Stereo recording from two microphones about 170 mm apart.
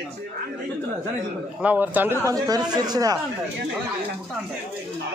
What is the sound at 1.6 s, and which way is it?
Speech, 10° right (ahead or behind).